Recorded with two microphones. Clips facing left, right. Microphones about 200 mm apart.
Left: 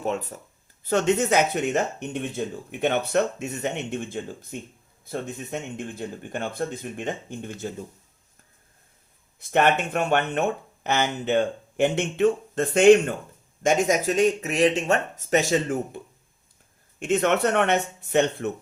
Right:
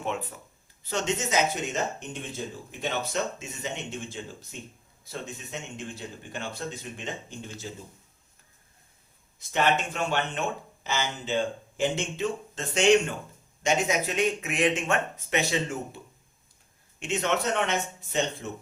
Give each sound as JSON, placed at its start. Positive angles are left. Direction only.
{"t": 0.0, "sound": "speech", "side_deg": 40}
{"t": 0.9, "sound": "speech", "side_deg": 55}
{"t": 9.4, "sound": "speech", "side_deg": 55}
{"t": 17.0, "sound": "speech", "side_deg": 55}